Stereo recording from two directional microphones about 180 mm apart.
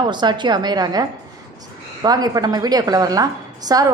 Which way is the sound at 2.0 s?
20° right (ahead or behind).